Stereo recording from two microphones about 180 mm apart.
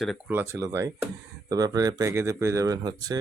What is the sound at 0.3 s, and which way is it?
Speech, 15° right (ahead or behind).